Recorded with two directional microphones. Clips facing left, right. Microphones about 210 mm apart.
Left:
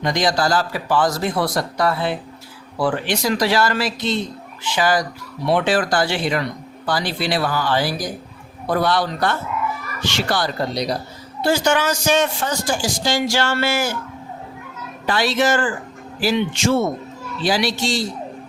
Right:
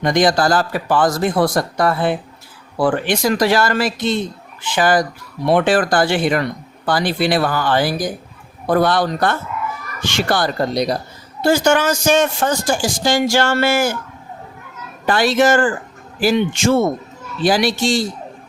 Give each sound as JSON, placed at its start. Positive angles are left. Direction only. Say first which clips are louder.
{"t": 0.0, "sound": "speech", "louder": "right 4 dB", "side_deg": -50}
{"t": 15.0, "sound": "speech", "louder": "right 4 dB", "side_deg": -50}